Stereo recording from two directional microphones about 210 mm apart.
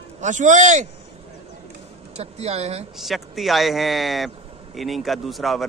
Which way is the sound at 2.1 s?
30° right (ahead or behind).